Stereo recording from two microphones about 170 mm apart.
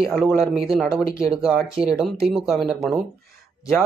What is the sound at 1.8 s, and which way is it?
Speech, 5° right (ahead or behind).